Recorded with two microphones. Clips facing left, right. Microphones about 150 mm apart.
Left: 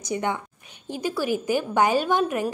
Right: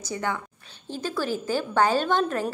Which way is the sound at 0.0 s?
20° left (ahead or behind).